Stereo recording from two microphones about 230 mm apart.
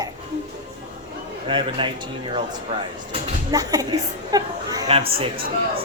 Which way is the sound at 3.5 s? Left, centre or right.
Centre.